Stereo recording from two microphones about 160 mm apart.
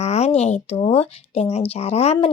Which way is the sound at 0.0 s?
40° left (ahead or behind).